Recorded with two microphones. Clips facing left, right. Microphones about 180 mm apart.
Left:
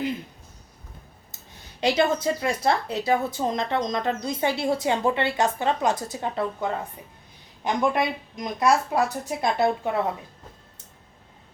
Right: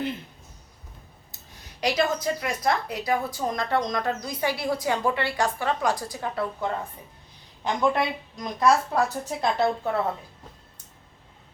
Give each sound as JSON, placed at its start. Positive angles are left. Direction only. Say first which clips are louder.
{"t": 1.8, "sound": "a woman's voice", "louder": "left 3 dB", "side_deg": 25}
{"t": 7.8, "sound": "speech", "louder": "even", "side_deg": 20}